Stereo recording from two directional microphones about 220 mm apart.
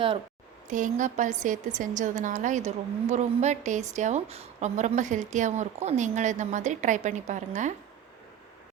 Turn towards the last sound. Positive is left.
turn(degrees=-35)  # may be behind; listen again after turning